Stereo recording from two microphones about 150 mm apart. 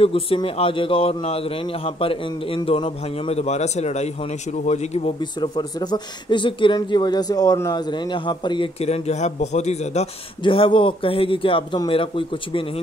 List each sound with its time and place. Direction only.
0.0 s a man's voice: 40° left (ahead or behind)
5.2 s a man's voice: 30° left (ahead or behind); by 10.0 s 50° left (ahead or behind)
10.4 s a man's voice: 35° left (ahead or behind)